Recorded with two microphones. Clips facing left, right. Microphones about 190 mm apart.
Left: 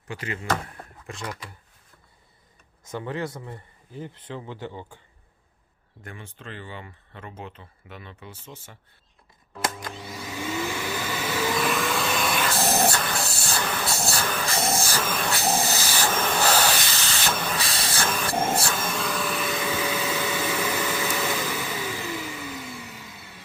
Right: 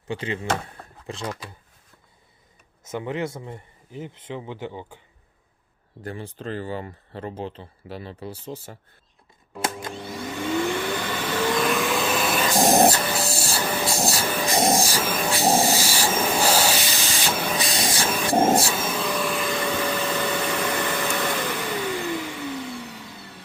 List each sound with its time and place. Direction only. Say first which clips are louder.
0.1 s speech: right 2 dB; 25° right (ahead or behind)
2.8 s speech: right 3 dB; 20° right (ahead or behind)
6.0 s speech: right 9 dB; 35° right (ahead or behind)
9.9 s vacuum cleaner: right 4 dB; 5° left (ahead or behind)
12.9 s spray: right 3 dB; 10° right (ahead or behind)
15.4 s speech: right 7 dB; 35° right (ahead or behind)
15.6 s hiss: right 3 dB; 10° right (ahead or behind)
18.6 s vacuum cleaner: right 2 dB; 5° right (ahead or behind)